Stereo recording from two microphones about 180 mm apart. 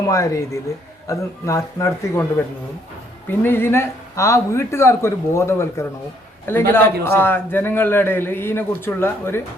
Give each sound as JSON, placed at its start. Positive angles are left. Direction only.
{"t": 0.1, "sound": "a man's voice", "side_deg": 15}
{"t": 3.2, "sound": "a man's voice", "side_deg": 10}